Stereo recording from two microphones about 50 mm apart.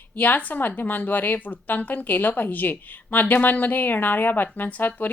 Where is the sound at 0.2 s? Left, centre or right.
Left.